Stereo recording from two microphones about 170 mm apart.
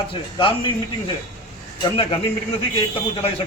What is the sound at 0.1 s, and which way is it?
Speech, 30° left (ahead or behind).